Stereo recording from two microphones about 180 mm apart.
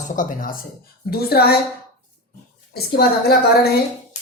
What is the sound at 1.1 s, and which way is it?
Speech, 60° left (ahead or behind).